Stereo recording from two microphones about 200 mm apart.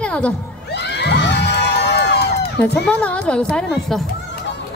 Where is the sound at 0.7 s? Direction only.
60° left (ahead or behind).